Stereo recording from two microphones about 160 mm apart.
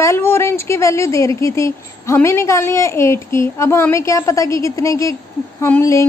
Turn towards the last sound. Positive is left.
turn(degrees=15)  # may be behind; listen again after turning